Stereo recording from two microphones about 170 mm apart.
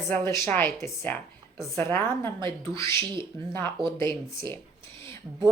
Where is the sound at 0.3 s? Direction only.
15° left (ahead or behind).